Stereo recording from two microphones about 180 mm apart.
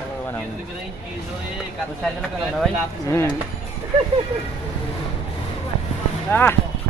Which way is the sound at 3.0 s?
15° left (ahead or behind).